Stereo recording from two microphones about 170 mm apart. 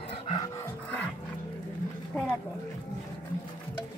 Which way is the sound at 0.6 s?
10° left (ahead or behind).